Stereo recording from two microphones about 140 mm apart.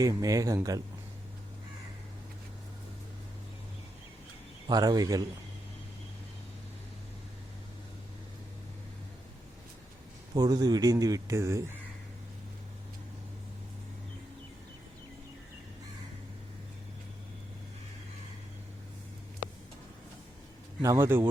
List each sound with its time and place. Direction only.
0.0 s speech: 25° right (ahead or behind)
4.7 s speech: 30° right (ahead or behind)
10.3 s speech: 30° right (ahead or behind)
20.8 s speech: 20° right (ahead or behind)